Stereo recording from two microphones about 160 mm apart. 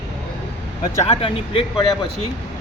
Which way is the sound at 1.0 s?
40° left (ahead or behind).